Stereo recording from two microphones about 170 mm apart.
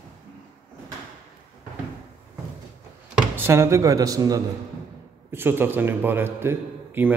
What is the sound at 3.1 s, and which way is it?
A man's voice, 10° right (ahead or behind).